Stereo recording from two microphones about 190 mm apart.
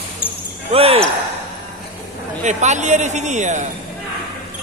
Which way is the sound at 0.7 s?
30° right (ahead or behind).